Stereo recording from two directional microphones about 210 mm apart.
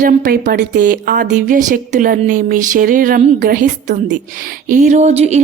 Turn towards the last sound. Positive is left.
turn(degrees=-30)  # may be behind; listen again after turning